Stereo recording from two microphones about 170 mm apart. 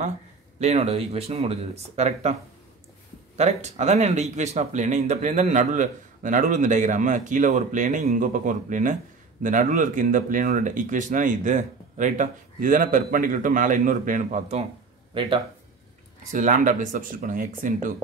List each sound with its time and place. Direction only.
0.6 s speech: 40° right (ahead or behind)
3.3 s speech: 40° right (ahead or behind)
15.1 s speech: 30° right (ahead or behind)
16.3 s speech: 50° right (ahead or behind)